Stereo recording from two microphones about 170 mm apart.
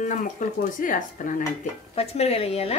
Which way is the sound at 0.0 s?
50° left (ahead or behind).